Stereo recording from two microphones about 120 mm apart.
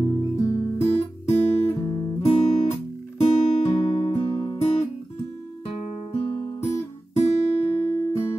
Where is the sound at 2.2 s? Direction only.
65° left (ahead or behind).